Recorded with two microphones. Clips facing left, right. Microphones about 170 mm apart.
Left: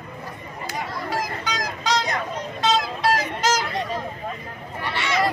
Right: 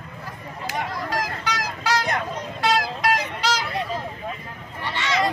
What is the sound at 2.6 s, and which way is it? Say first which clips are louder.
Music: even; 20° left (ahead or behind).